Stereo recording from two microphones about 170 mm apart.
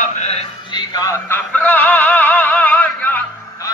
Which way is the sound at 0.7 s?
20° left (ahead or behind).